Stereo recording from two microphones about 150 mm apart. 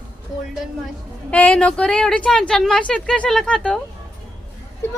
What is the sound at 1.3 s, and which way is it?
Speech, 10° left (ahead or behind).